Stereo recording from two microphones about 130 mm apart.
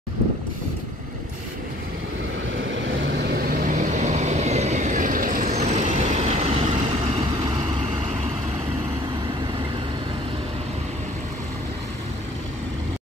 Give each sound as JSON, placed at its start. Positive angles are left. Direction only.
{"t": 3.4, "sound": "vehicle", "side_deg": -90}
{"t": 5.5, "sound": "vehicle", "side_deg": -60}